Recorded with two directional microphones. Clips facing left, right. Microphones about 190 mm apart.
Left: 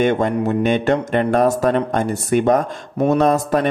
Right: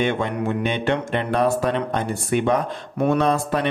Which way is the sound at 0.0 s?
45° left (ahead or behind).